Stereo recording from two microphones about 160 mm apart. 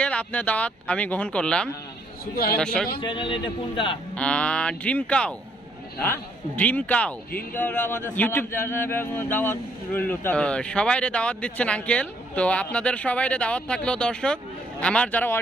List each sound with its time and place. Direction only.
0.0 s speech: 10° left (ahead or behind)
2.3 s a man's voice: 70° left (ahead or behind)
2.6 s a man's voice: 5° left (ahead or behind)
3.0 s a man's voice: 30° left (ahead or behind)
4.1 s speech: 10° left (ahead or behind)